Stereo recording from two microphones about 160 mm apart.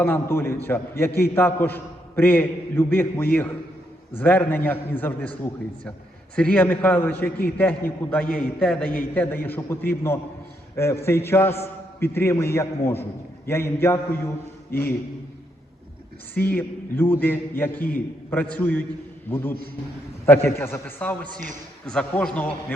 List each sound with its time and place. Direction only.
0.0 s a man's voice: 15° left (ahead or behind)
16.3 s a man's voice: 10° left (ahead or behind)